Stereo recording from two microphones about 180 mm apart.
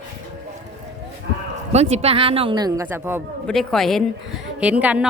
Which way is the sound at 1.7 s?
35° right (ahead or behind).